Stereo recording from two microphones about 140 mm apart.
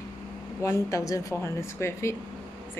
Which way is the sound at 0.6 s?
20° left (ahead or behind).